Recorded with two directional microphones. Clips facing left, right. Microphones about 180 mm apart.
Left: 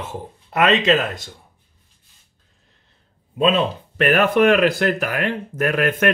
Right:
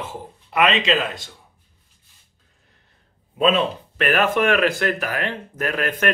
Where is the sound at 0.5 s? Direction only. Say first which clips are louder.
Left 3 dB; 45° left (ahead or behind).